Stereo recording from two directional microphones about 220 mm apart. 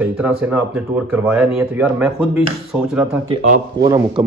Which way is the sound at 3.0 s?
30° right (ahead or behind).